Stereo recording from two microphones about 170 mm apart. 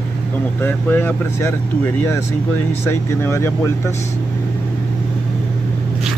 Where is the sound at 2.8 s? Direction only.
15° left (ahead or behind).